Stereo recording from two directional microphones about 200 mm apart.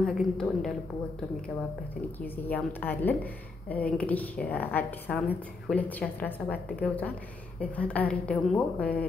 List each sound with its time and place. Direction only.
0.0 s a woman's voice: centre (ahead or behind)
2.2 s a woman's voice: 10° left (ahead or behind)